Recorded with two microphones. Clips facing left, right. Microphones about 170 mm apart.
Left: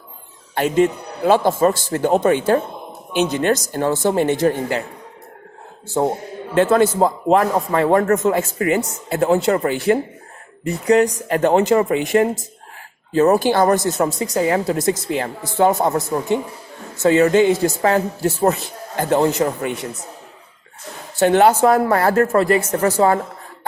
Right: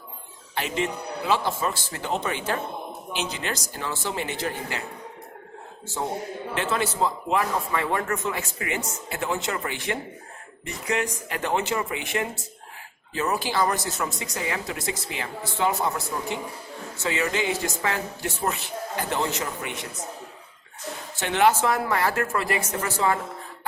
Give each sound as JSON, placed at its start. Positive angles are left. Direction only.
{"t": 0.5, "sound": "speech", "side_deg": 50}
{"t": 6.5, "sound": "a man's voice", "side_deg": 50}
{"t": 21.2, "sound": "a man's voice", "side_deg": 40}